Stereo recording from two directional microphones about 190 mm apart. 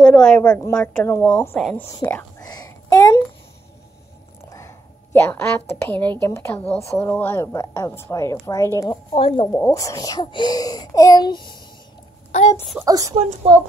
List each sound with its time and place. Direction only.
0.0 s a woman's voice: 5° left (ahead or behind); by 3.2 s 20° left (ahead or behind)
4.5 s a sound: 15° left (ahead or behind)
6.2 s a woman's voice: 15° left (ahead or behind)
9.1 s a child's voice: 30° left (ahead or behind)
9.5 s a child's voice: 15° left (ahead or behind)
12.3 s a child's voice: 40° left (ahead or behind)
12.8 s speech: 20° right (ahead or behind)
13.1 s a woman's voice: 35° right (ahead or behind)